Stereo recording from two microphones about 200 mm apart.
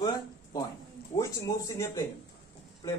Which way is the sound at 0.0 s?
20° left (ahead or behind).